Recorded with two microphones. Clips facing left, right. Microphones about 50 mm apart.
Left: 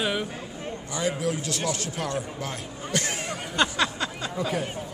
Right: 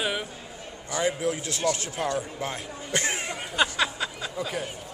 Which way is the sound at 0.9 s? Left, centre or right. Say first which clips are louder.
Right 1 dB; right.